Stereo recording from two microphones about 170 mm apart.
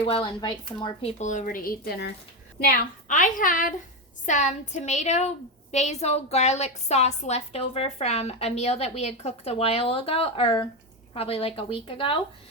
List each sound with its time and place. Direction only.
0.0 s a woman's voice: 30° left (ahead or behind)
1.2 s a woman's voice: 45° left (ahead or behind); by 2.1 s 80° left
2.6 s a woman's voice: 60° left (ahead or behind); by 12.1 s 30° left (ahead or behind)